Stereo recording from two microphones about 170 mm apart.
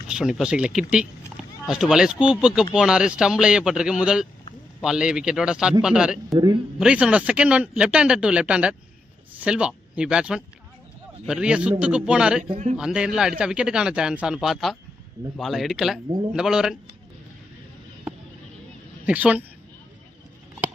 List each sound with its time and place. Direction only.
0.1 s a man's voice: 5° right (ahead or behind)
6.3 s a man's voice: 25° right (ahead or behind)
6.8 s a man's voice: 5° right (ahead or behind)
19.0 s speech: 10° right (ahead or behind)